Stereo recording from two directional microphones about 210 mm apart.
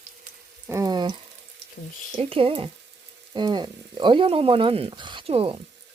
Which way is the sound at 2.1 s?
25° right (ahead or behind).